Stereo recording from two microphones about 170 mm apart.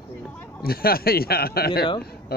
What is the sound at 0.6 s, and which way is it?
A man's voice, 60° left (ahead or behind).